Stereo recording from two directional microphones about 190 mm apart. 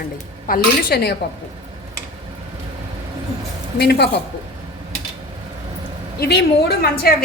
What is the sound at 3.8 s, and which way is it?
Speech, 60° left (ahead or behind).